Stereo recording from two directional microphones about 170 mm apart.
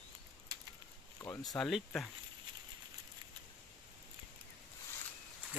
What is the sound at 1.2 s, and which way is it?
Speech, 20° left (ahead or behind).